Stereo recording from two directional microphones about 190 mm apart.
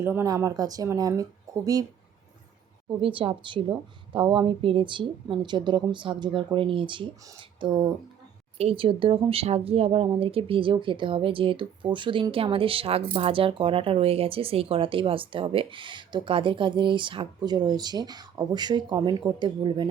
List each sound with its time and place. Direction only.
0.0 s speech: 15° right (ahead or behind)
3.0 s speech: 30° right (ahead or behind)